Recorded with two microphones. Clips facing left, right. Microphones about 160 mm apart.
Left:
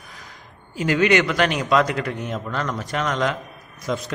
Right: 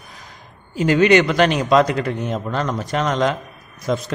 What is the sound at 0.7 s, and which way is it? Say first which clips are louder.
Speech: right 4 dB; 30° right (ahead or behind).